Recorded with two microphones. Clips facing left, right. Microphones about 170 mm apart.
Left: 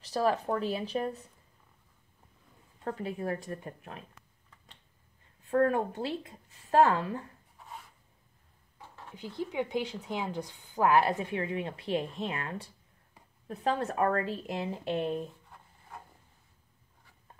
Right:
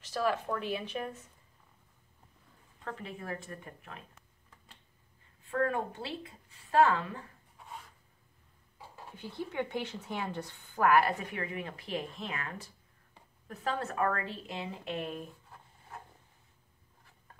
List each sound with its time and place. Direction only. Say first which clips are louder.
0.0 s a woman's voice: left 3 dB; 35° left (ahead or behind)
2.8 s a woman's voice: left 7 dB; 35° left (ahead or behind)
5.5 s a woman's voice: left 5 dB; 40° left (ahead or behind)
7.5 s writing: even; centre (ahead or behind)
8.7 s a sound: even; 10° right (ahead or behind)
9.4 s a woman's voice: left 3 dB; 15° left (ahead or behind); by 15.2 s 30° left (ahead or behind)